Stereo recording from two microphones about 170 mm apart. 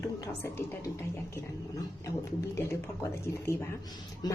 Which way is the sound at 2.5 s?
15° left (ahead or behind).